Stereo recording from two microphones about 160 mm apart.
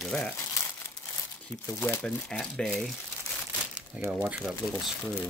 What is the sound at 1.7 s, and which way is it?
Speech, 15° left (ahead or behind).